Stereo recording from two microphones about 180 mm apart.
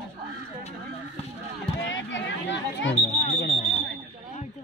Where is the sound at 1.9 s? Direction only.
90° left.